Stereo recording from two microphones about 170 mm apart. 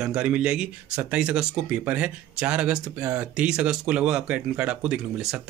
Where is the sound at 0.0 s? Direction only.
5° right (ahead or behind).